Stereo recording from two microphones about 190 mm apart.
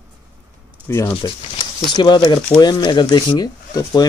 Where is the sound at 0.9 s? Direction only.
10° left (ahead or behind).